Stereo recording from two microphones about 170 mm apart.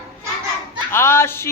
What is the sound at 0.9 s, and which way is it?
Speech, 15° left (ahead or behind).